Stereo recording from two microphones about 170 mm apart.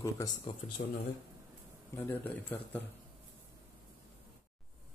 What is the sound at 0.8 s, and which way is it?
Speech, 60° left (ahead or behind).